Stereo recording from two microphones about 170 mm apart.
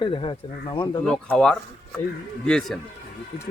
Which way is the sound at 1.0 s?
5° left (ahead or behind).